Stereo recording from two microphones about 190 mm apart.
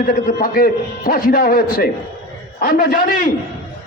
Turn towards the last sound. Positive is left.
turn(degrees=50)  # may be behind; listen again after turning